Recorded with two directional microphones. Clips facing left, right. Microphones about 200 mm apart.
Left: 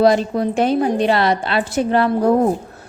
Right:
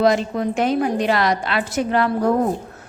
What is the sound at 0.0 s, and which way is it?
A woman's voice, 35° left (ahead or behind).